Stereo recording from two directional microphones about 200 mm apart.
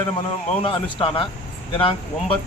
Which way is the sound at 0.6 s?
25° left (ahead or behind).